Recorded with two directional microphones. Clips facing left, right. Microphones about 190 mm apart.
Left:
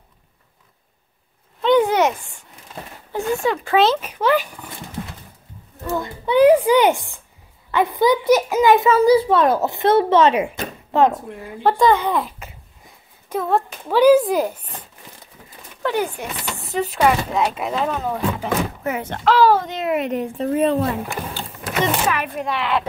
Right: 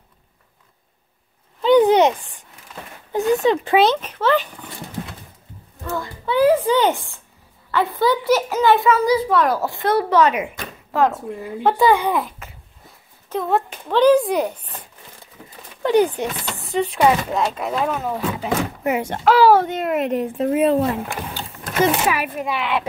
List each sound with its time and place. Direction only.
1.8 s a sound: 20° right (ahead or behind)
3.1 s speech: 20° right (ahead or behind)
3.7 s a child's voice: centre (ahead or behind)
5.9 s a sound: 20° left (ahead or behind)
7.7 s a child's voice: 15° left (ahead or behind)
11.1 s speech: 5° right (ahead or behind)
13.4 s speech: centre (ahead or behind)
15.8 s speech: 20° right (ahead or behind)
16.6 s speech: centre (ahead or behind)
21.8 s speech: 5° right (ahead or behind)